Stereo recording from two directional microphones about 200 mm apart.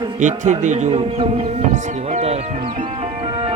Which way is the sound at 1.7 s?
35° right (ahead or behind).